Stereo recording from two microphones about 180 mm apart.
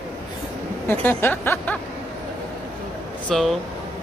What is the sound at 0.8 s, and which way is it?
Speech, 10° left (ahead or behind).